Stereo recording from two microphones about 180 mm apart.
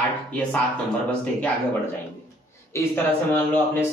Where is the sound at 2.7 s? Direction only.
15° left (ahead or behind).